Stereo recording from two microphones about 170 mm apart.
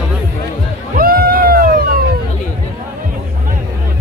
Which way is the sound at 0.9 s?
60° right (ahead or behind).